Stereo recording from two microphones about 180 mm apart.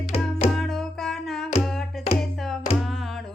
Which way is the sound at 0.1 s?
35° left (ahead or behind).